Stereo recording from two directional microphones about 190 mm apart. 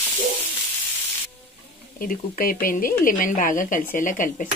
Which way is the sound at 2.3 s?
50° left (ahead or behind).